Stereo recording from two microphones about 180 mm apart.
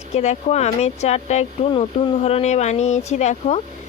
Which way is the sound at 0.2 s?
40° left (ahead or behind).